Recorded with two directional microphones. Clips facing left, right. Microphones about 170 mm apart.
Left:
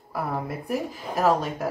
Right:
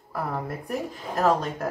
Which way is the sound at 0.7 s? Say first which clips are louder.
Left 2 dB; 5° left (ahead or behind).